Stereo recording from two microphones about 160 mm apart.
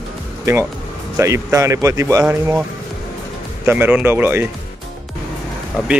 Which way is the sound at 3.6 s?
10° right (ahead or behind).